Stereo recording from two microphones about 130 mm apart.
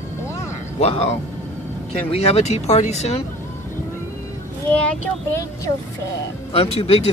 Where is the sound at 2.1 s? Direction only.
55° left (ahead or behind).